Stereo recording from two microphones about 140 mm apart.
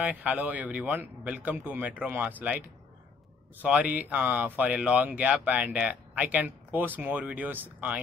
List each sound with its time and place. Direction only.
0.0 s speech: 10° right (ahead or behind)
3.6 s speech: 10° right (ahead or behind)